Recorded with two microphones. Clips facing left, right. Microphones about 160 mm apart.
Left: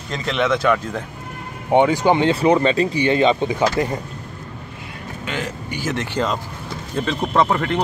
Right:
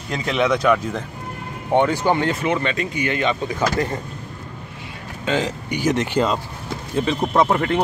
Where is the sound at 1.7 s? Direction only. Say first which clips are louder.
Left 3 dB; 15° left (ahead or behind).